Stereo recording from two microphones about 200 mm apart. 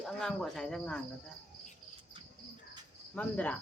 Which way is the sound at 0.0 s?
Centre (ahead or behind).